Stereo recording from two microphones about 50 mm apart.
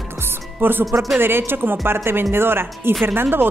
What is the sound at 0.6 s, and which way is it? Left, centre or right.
A woman's voice, right.